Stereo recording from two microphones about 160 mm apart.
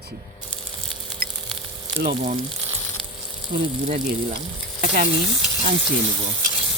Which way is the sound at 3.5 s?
45° right (ahead or behind).